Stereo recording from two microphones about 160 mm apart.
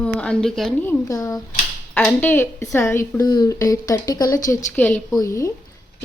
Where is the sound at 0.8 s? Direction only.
15° left (ahead or behind).